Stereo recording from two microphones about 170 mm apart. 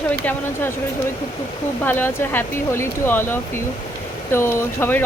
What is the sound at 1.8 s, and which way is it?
Speech, 10° left (ahead or behind).